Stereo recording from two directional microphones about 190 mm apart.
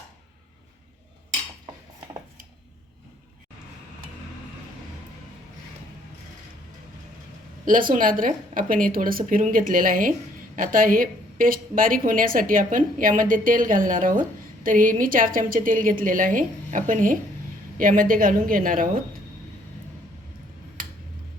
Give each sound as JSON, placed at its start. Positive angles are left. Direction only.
{"t": 7.6, "sound": "a woman's voice", "side_deg": -45}